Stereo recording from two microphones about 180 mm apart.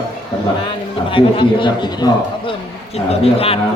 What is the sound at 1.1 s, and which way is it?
A man's voice, 30° left (ahead or behind).